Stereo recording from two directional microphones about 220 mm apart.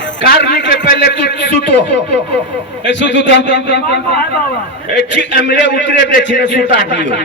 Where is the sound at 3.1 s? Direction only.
55° left (ahead or behind).